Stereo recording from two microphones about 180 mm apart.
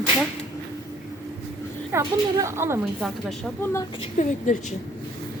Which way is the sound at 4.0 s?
40° left (ahead or behind).